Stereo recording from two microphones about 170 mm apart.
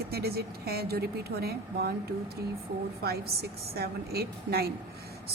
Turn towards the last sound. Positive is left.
turn(degrees=-65)  # may be behind; listen again after turning